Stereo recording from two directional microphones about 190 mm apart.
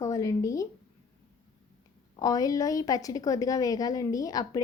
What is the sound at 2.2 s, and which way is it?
A woman's voice, 20° left (ahead or behind).